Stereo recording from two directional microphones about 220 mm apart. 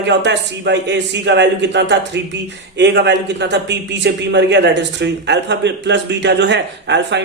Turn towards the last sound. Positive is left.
turn(degrees=-55)  # may be behind; listen again after turning